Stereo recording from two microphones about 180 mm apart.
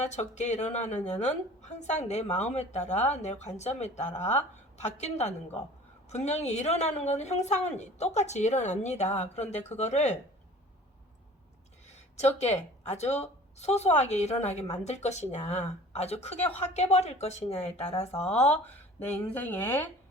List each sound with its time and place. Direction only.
0.0 s a woman's voice: 40° left (ahead or behind)
12.4 s a woman's voice: 40° left (ahead or behind)
19.0 s speech: 10° left (ahead or behind)